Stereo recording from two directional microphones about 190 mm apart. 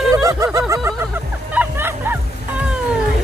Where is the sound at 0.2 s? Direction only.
15° right (ahead or behind).